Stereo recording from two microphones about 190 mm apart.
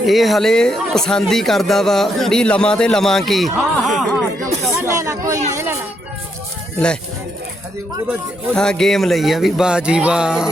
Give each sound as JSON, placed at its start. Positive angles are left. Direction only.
{"t": 0.0, "sound": "speech", "side_deg": 0}
{"t": 4.4, "sound": "music", "side_deg": -35}
{"t": 4.7, "sound": "chatter", "side_deg": -15}
{"t": 6.7, "sound": "speech", "side_deg": 5}
{"t": 8.5, "sound": "speech", "side_deg": 5}